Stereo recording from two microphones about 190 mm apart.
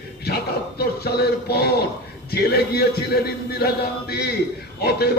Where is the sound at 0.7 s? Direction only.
55° left (ahead or behind).